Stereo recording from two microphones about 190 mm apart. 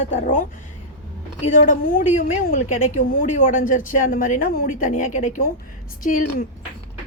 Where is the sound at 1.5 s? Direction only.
45° left (ahead or behind).